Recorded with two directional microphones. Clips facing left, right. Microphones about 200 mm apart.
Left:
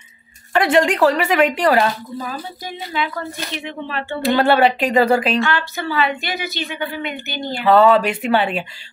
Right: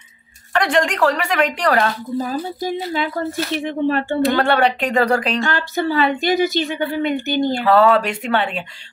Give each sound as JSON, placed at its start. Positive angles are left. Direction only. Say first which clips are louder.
{"t": 0.5, "sound": "a woman's voice", "louder": "left 3 dB", "side_deg": 5}
{"t": 2.9, "sound": "speech", "louder": "right 3 dB", "side_deg": -40}
{"t": 4.2, "sound": "a woman's voice", "louder": "left 3 dB", "side_deg": 5}
{"t": 5.4, "sound": "speech", "louder": "right 1 dB", "side_deg": -45}
{"t": 7.5, "sound": "a woman's voice", "louder": "left 3 dB", "side_deg": 0}